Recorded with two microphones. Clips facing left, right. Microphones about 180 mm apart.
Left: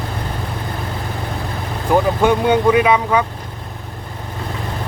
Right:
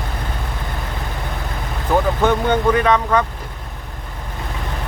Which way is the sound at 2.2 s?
10° left (ahead or behind).